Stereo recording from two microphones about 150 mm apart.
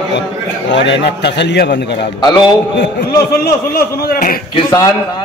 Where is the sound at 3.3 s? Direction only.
85° left.